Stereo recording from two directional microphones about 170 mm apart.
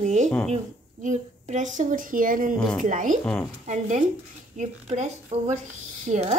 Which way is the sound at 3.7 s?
45° right (ahead or behind).